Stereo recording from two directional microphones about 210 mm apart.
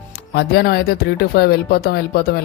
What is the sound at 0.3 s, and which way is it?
Speech, 50° left (ahead or behind).